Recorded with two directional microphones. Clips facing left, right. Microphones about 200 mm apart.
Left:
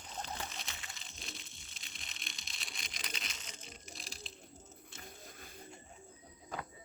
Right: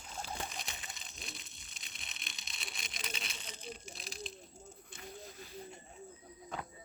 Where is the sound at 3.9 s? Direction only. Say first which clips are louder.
Right 5 dB; 20° right (ahead or behind).